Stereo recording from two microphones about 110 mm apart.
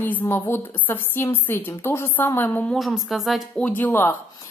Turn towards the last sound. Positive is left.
turn(degrees=15)  # may be behind; listen again after turning